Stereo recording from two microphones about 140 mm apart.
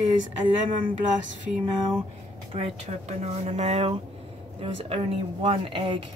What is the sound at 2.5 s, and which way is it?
Speech, 50° right (ahead or behind).